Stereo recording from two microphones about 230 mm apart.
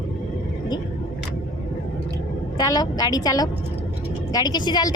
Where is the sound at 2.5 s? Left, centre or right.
Centre.